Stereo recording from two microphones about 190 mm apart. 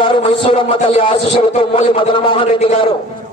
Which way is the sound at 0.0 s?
25° left (ahead or behind).